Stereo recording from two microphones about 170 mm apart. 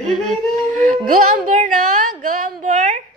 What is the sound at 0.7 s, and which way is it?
Speech, 50° right (ahead or behind).